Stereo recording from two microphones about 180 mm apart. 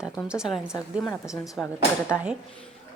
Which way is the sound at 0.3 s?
5° right (ahead or behind).